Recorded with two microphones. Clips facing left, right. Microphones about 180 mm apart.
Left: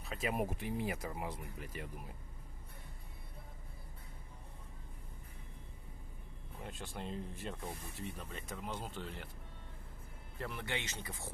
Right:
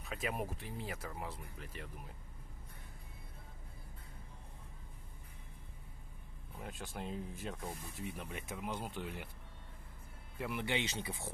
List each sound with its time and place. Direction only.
0.0 s a sound: centre (ahead or behind)
0.4 s speech: 15° left (ahead or behind)
6.6 s speech: centre (ahead or behind)
10.3 s speech: 10° right (ahead or behind)